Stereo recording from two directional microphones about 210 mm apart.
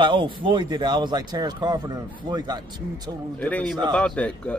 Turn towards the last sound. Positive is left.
turn(degrees=5)  # may be behind; listen again after turning